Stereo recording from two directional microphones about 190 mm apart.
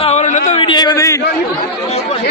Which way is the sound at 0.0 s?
35° left (ahead or behind).